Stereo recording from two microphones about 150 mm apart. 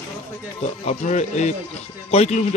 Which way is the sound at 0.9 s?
50° left (ahead or behind).